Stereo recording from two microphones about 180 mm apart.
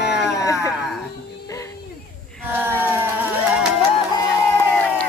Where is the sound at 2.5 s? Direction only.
10° right (ahead or behind).